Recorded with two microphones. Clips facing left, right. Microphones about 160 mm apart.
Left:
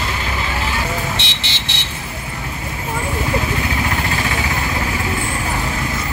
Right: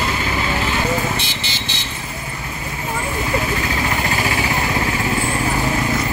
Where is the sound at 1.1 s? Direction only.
75° left (ahead or behind).